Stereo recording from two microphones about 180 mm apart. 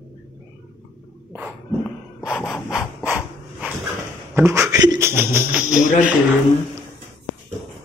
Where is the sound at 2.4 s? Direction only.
5° left (ahead or behind).